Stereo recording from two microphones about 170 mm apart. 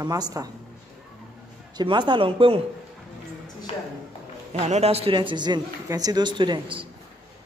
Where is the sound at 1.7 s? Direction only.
25° right (ahead or behind).